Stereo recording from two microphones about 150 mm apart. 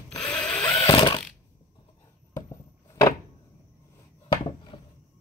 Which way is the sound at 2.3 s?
25° left (ahead or behind).